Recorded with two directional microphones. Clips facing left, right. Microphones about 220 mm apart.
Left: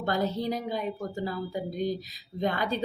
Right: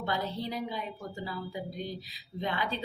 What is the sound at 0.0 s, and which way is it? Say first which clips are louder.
A woman's voice: left 5 dB; 45° left (ahead or behind).